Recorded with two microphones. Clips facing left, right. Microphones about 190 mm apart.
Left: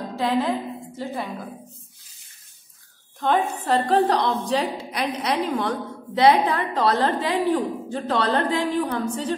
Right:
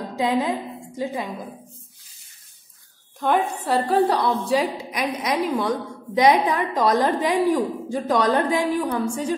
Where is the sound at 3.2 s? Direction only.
10° right (ahead or behind).